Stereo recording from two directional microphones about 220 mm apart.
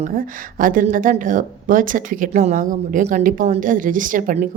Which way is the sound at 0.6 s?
40° right (ahead or behind).